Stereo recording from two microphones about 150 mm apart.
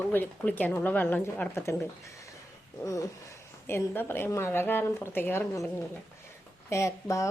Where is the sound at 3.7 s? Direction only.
15° left (ahead or behind).